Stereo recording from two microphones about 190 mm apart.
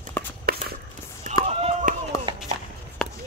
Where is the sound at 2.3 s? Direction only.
25° right (ahead or behind).